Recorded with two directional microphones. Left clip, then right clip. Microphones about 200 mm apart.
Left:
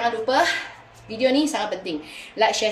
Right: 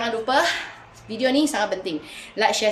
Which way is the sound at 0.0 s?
20° right (ahead or behind).